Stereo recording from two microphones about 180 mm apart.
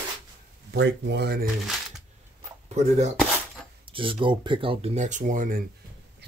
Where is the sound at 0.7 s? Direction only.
70° right (ahead or behind).